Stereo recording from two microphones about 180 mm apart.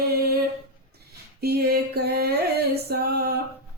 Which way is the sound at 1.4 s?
60° right (ahead or behind).